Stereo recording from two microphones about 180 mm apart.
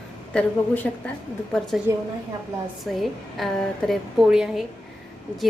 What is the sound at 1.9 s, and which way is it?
Speech, 15° right (ahead or behind).